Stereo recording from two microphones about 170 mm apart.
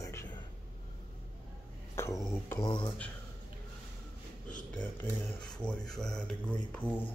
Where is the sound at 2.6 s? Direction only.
25° left (ahead or behind).